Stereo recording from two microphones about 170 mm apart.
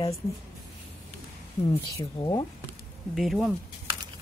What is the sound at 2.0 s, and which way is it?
Speech, 20° left (ahead or behind).